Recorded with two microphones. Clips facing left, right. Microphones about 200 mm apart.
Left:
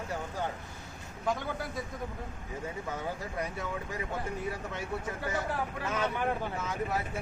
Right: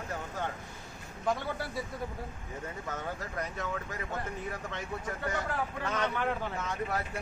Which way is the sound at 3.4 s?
10° left (ahead or behind).